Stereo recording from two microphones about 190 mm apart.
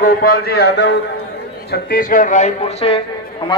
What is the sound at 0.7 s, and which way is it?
Speech, 65° left (ahead or behind).